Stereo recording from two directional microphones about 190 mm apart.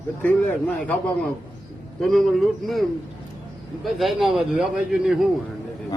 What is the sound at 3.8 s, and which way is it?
A man's voice, centre (ahead or behind).